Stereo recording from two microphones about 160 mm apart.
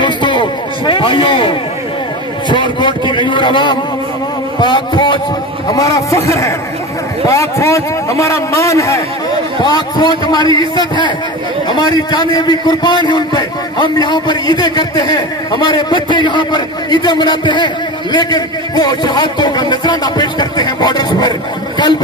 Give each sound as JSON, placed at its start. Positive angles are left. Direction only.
{"t": 0.0, "sound": "a sound", "side_deg": 30}
{"t": 2.5, "sound": "a man's voice", "side_deg": 30}
{"t": 10.5, "sound": "a man's voice", "side_deg": -30}
{"t": 11.7, "sound": "a man's voice", "side_deg": 25}